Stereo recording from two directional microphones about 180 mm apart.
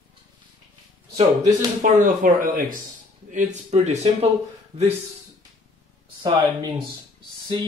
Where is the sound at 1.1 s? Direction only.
45° right (ahead or behind).